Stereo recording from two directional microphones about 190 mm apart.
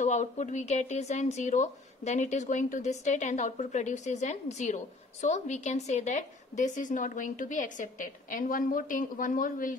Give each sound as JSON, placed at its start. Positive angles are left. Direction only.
{"t": 0.0, "sound": "speech", "side_deg": 40}